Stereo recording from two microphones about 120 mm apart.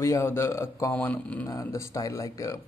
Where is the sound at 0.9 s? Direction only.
10° left (ahead or behind).